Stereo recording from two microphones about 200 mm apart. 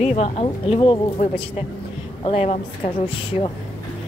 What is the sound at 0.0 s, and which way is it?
Speech, 35° left (ahead or behind).